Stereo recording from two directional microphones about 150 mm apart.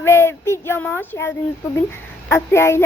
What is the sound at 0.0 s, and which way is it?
Speech, 15° left (ahead or behind).